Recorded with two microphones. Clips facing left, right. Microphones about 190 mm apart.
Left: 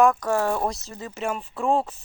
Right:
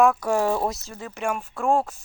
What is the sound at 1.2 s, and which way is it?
Speech, 10° right (ahead or behind).